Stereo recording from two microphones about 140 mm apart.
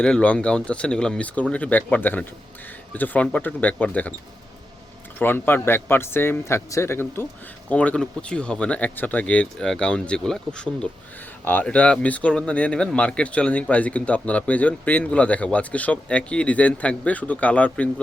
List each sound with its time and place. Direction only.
0.0 s speech: 10° left (ahead or behind)
5.2 s speech: 15° left (ahead or behind)